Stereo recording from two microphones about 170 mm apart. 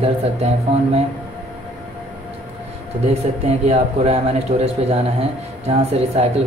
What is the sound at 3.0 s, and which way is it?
A man's voice, 35° right (ahead or behind).